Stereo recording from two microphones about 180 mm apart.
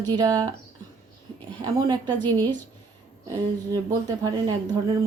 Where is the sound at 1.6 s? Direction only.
20° right (ahead or behind).